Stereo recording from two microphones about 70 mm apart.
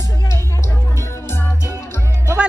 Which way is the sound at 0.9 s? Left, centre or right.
Left.